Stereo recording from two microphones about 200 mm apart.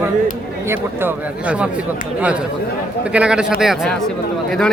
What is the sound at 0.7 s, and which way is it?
Speech, 10° right (ahead or behind).